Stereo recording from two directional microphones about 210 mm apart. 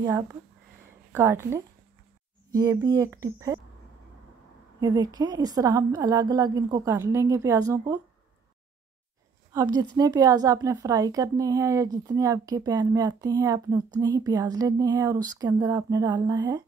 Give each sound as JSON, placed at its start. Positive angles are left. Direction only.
{"t": 1.1, "sound": "a woman's voice", "side_deg": -10}
{"t": 4.7, "sound": "a woman's voice", "side_deg": -20}
{"t": 9.5, "sound": "a woman's voice", "side_deg": -15}